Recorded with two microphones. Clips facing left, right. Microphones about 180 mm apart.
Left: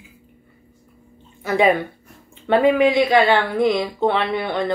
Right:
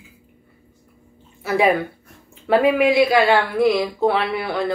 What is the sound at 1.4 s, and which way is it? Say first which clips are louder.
Speech: left 1 dB; 5° right (ahead or behind).